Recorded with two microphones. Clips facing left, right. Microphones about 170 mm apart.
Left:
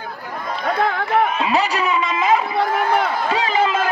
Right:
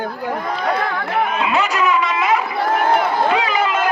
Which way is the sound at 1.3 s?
35° left (ahead or behind).